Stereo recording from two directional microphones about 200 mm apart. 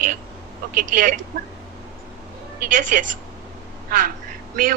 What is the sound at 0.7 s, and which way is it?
Speech, 45° right (ahead or behind).